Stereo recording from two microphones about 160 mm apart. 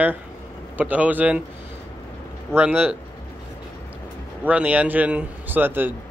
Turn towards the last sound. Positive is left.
turn(degrees=-10)  # may be behind; listen again after turning